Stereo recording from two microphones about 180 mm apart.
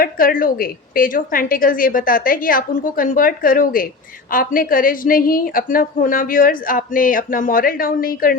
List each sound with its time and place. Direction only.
0.0 s a woman's voice: 50° left (ahead or behind)